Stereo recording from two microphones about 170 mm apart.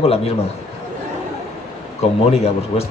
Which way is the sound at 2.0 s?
40° left (ahead or behind).